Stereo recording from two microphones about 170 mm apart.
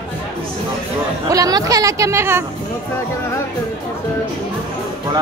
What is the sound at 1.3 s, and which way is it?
Speech, 20° right (ahead or behind).